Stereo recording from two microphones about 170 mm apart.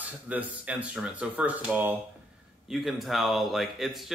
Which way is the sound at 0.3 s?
10° right (ahead or behind).